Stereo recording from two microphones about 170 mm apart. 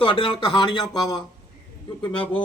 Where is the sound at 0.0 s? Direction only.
30° left (ahead or behind).